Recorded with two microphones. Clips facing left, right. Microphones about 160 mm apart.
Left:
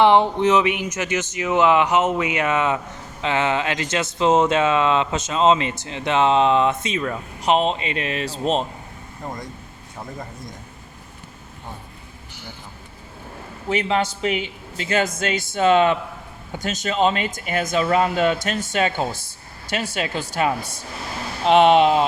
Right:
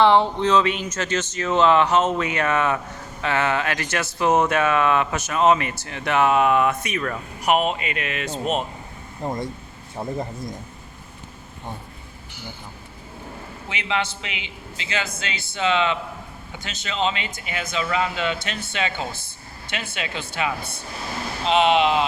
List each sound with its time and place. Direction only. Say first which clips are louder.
0.0 s speech: left 2 dB; 15° left (ahead or behind)
9.2 s speech: right 5 dB; 25° right (ahead or behind)
13.7 s speech: left 6 dB; 40° left (ahead or behind)